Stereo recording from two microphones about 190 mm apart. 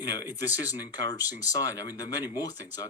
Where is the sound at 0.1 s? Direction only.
20° left (ahead or behind).